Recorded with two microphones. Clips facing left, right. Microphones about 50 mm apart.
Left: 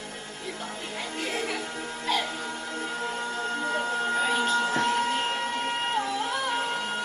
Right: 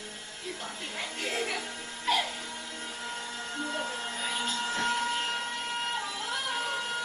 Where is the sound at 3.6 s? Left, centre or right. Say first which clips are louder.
Left 5 dB; left.